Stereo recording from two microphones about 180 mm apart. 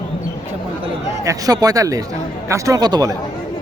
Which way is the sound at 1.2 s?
20° right (ahead or behind).